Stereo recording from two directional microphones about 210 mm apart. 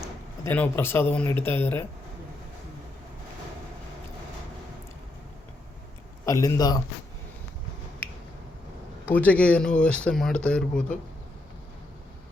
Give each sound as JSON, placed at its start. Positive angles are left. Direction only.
{"t": 0.0, "sound": "speech", "side_deg": 10}
{"t": 6.2, "sound": "a man's voice", "side_deg": 15}
{"t": 9.0, "sound": "speech", "side_deg": 5}